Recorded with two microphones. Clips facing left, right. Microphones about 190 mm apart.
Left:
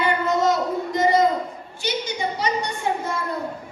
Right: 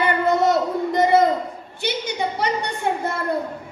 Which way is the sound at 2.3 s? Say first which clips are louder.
Right 1 dB; 60° right (ahead or behind).